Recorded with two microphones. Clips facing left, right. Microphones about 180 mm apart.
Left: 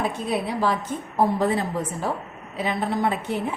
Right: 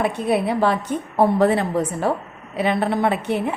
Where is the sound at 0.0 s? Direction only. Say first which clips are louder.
Right 5 dB; 65° right (ahead or behind).